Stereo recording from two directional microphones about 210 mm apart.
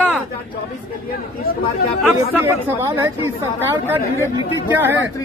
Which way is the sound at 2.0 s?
10° right (ahead or behind).